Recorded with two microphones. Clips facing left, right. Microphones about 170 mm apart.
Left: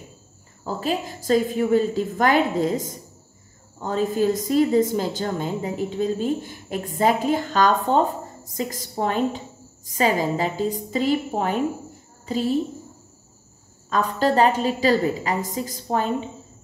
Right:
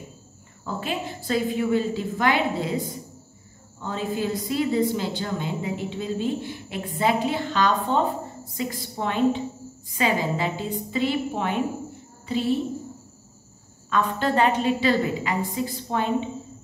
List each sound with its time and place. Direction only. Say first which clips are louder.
0.7 s a woman's voice: left 4 dB; 40° left (ahead or behind)
13.8 s a woman's voice: left 3 dB; 40° left (ahead or behind)